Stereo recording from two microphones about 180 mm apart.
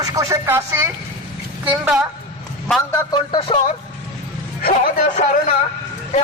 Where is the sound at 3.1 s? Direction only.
30° left (ahead or behind).